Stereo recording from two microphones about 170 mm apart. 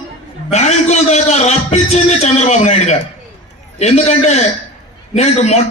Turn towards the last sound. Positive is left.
turn(degrees=40)  # may be behind; listen again after turning